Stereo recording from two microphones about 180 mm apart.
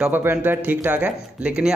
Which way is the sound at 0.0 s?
10° right (ahead or behind).